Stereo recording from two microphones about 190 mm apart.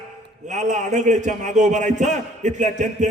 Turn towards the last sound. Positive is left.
turn(degrees=-40)  # may be behind; listen again after turning